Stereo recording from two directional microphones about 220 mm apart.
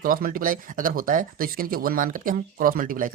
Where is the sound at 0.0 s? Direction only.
40° right (ahead or behind).